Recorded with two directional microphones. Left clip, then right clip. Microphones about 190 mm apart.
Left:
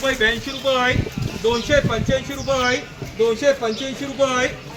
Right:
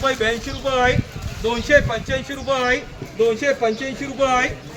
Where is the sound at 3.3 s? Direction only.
Centre (ahead or behind).